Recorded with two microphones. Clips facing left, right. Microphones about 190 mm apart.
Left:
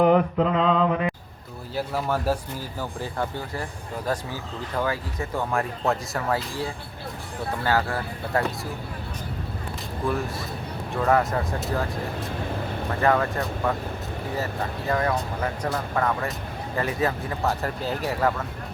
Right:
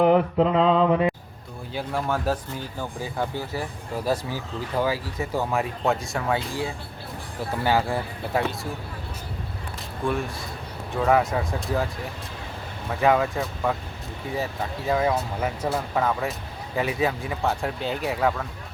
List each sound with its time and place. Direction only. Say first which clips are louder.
0.1 s mantra: right 1 dB; 30° right (ahead or behind)
1.7 s speech: left 1 dB; 5° left (ahead or behind)
3.0 s speech: right 2 dB; 5° right (ahead or behind)
4.8 s speech: right 2 dB; 10° right (ahead or behind)
7.6 s speech: right 2 dB; 15° right (ahead or behind)
8.3 s speech: even; centre (ahead or behind)
10.0 s speech: even; centre (ahead or behind)
13.0 s speech: right 2 dB; 10° right (ahead or behind)